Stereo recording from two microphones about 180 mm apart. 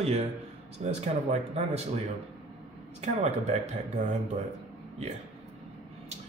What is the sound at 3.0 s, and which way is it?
Speech, 35° right (ahead or behind).